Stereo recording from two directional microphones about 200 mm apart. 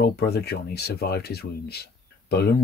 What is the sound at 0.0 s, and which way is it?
Speech, 55° left (ahead or behind).